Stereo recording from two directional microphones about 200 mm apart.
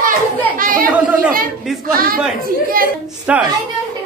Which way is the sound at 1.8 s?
45° right (ahead or behind).